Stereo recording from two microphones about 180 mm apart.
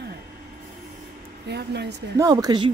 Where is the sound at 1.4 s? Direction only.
70° right (ahead or behind).